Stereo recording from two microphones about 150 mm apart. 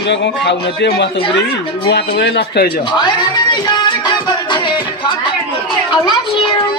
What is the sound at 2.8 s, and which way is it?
Music, 30° left (ahead or behind).